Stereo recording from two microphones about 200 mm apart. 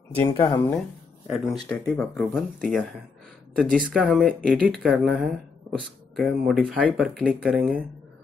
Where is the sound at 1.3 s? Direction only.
Centre (ahead or behind).